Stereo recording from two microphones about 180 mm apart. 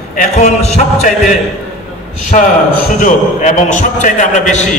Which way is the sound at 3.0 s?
45° left (ahead or behind).